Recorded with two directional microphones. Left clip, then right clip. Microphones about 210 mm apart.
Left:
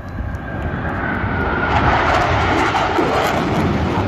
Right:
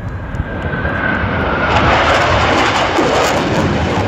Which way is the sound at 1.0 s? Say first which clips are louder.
Right 4 dB; 30° right (ahead or behind).